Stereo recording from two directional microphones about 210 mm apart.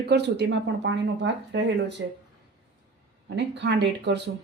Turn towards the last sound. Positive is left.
turn(degrees=-55)  # may be behind; listen again after turning